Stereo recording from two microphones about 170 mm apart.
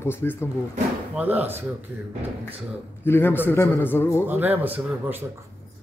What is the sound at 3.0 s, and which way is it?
Speech, 15° left (ahead or behind).